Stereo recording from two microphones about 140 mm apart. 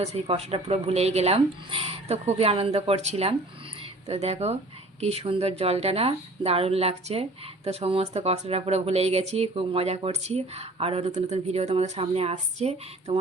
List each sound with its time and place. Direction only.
0.0 s speech: 50° right (ahead or behind)